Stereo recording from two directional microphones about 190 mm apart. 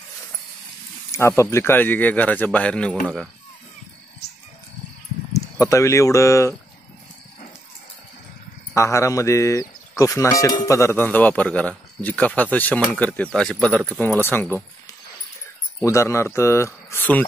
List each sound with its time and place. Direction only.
1.1 s speech: 15° left (ahead or behind)
5.4 s speech: 15° left (ahead or behind)
8.7 s speech: 15° left (ahead or behind)